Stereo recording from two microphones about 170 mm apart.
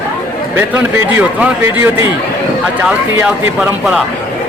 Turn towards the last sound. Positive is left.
turn(degrees=-15)  # may be behind; listen again after turning